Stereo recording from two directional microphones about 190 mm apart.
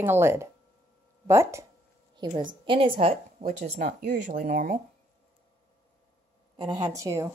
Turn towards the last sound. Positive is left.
turn(degrees=-15)  # may be behind; listen again after turning